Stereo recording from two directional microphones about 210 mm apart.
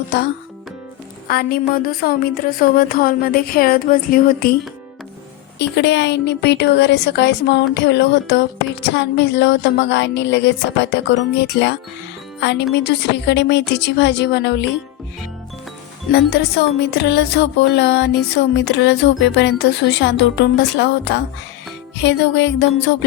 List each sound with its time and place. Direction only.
1.3 s a woman's voice: 45° left (ahead or behind)
5.5 s a woman's voice: 55° left (ahead or behind)
16.1 s a woman's voice: 50° left (ahead or behind)